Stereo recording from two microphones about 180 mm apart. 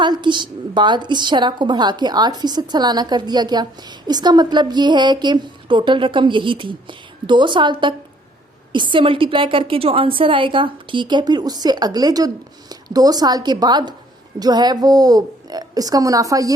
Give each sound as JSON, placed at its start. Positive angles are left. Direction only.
{"t": 0.0, "sound": "a woman's voice", "side_deg": -25}